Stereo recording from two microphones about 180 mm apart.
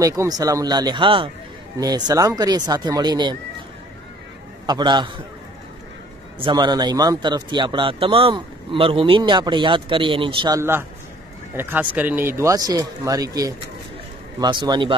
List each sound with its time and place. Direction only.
0.0 s a man's voice: 20° right (ahead or behind)
4.6 s a man's voice: 25° right (ahead or behind)
6.4 s a man's voice: 25° right (ahead or behind)
10.6 s a man's voice: 15° right (ahead or behind)